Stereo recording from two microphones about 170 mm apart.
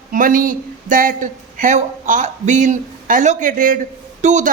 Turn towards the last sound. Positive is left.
turn(degrees=-45)  # may be behind; listen again after turning